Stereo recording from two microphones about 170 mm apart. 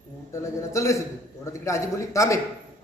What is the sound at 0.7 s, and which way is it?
A man's voice, 15° left (ahead or behind).